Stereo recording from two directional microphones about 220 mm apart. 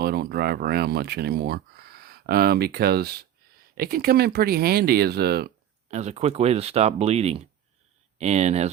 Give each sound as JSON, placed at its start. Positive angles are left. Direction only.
{"t": 0.0, "sound": "speech", "side_deg": -45}
{"t": 5.9, "sound": "speech", "side_deg": -30}